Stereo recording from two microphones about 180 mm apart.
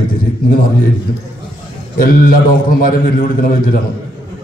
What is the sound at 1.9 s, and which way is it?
A man's voice, 50° left (ahead or behind).